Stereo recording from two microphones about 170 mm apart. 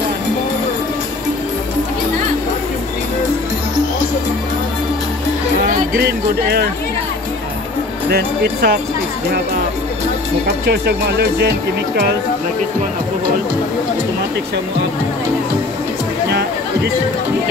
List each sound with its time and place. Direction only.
5.7 s music: 50° right (ahead or behind)
8.1 s speech: 70° right (ahead or behind)
10.4 s speech: 75° right (ahead or behind)